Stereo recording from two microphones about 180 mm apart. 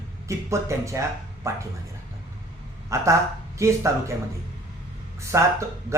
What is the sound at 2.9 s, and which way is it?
Speech, 15° right (ahead or behind).